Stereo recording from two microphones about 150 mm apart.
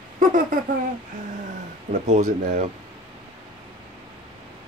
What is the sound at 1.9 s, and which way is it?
Speech, 55° right (ahead or behind).